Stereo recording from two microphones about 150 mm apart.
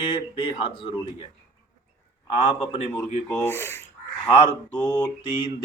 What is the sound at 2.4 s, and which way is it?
Speech, 45° left (ahead or behind).